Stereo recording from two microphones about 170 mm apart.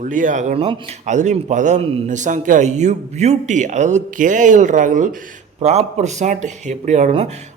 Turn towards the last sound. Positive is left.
turn(degrees=-40)  # may be behind; listen again after turning